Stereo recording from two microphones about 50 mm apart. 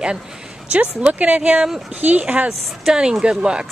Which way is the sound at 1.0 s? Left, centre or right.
Right.